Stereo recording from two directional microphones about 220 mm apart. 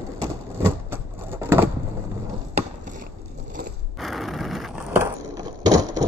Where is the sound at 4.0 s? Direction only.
Centre (ahead or behind).